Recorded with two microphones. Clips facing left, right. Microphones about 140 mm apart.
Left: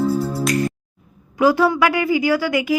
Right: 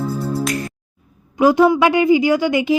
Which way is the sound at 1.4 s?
20° right (ahead or behind).